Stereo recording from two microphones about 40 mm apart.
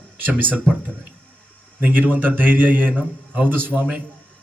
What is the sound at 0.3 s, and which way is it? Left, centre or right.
Speech, right.